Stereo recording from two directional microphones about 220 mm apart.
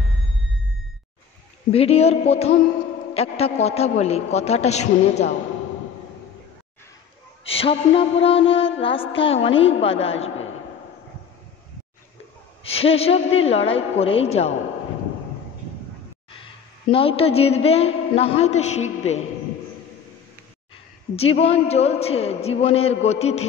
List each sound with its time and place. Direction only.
1.7 s a woman's voice: 25° left (ahead or behind)
7.4 s a woman's voice: 25° left (ahead or behind)
12.6 s a woman's voice: 25° left (ahead or behind)
16.9 s a woman's voice: 25° left (ahead or behind)
21.2 s a woman's voice: 25° left (ahead or behind)